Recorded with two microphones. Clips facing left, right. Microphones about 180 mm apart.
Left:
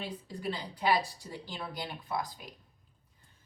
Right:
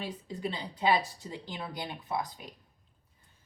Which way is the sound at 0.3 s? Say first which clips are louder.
Even; 20° right (ahead or behind).